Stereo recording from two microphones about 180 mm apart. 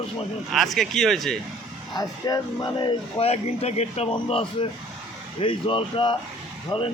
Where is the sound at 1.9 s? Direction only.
20° left (ahead or behind).